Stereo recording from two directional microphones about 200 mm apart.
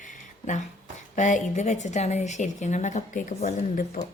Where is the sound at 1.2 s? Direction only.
40° left (ahead or behind).